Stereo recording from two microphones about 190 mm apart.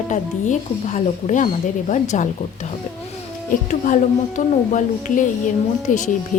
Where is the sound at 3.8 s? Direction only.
40° left (ahead or behind).